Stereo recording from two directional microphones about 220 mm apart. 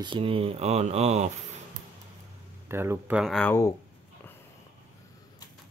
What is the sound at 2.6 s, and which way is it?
Speech, 10° right (ahead or behind).